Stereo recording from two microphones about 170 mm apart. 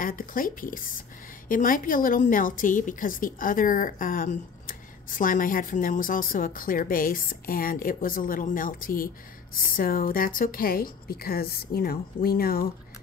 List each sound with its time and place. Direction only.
0.0 s a woman's voice: 55° left (ahead or behind)